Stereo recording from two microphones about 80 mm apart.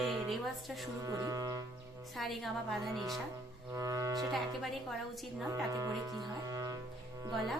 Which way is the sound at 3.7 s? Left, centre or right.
Right.